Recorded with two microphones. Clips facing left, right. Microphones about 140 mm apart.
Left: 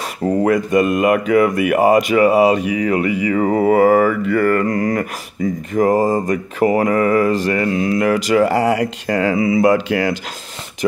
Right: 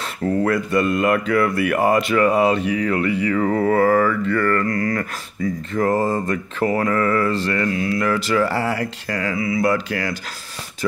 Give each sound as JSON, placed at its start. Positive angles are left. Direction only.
{"t": 0.2, "sound": "speech", "side_deg": 20}